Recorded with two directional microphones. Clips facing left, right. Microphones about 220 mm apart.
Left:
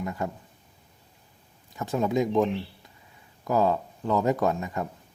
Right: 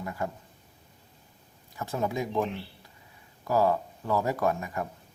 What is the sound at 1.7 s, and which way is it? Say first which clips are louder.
A man's voice: left 5 dB; 20° left (ahead or behind).